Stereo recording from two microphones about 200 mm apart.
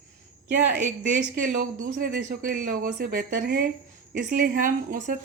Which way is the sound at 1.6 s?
45° right (ahead or behind).